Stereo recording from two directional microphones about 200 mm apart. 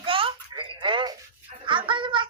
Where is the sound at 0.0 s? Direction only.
25° right (ahead or behind).